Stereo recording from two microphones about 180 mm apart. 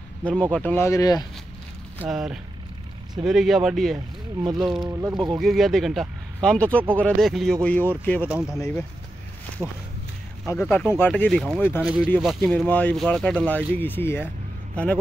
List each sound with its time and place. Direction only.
0.2 s speech: 5° left (ahead or behind)
2.0 s speech: centre (ahead or behind)
4.8 s speech: 20° right (ahead or behind)
5.4 s speech: centre (ahead or behind)
6.8 s speech: 10° right (ahead or behind)
7.2 s speech: centre (ahead or behind)
8.3 s speech: 5° right (ahead or behind)
8.5 s speech: 15° left (ahead or behind)
9.6 s speech: 10° right (ahead or behind)
10.5 s speech: 10° left (ahead or behind)
11.8 s speech: 5° right (ahead or behind); by 14.2 s 10° left (ahead or behind)